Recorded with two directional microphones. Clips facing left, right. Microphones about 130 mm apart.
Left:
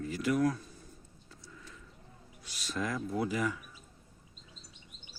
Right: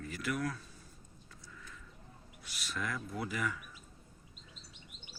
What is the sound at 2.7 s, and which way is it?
Speech, 25° left (ahead or behind).